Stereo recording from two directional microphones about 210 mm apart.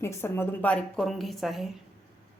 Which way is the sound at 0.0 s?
10° left (ahead or behind).